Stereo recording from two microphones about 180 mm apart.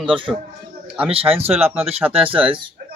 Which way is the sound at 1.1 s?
30° right (ahead or behind).